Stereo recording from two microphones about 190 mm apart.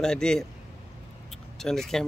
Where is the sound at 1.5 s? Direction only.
Centre (ahead or behind).